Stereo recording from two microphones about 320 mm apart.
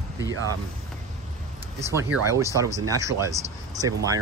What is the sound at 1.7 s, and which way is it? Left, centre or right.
Speech, centre.